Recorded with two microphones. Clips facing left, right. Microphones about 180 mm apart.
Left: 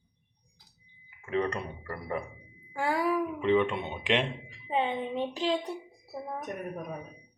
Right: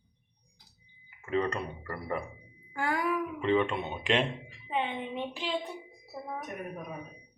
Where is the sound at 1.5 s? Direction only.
15° left (ahead or behind).